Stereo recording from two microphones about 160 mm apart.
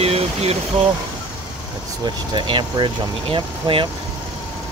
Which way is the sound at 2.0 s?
30° right (ahead or behind).